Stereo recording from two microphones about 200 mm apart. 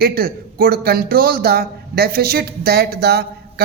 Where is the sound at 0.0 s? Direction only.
45° right (ahead or behind).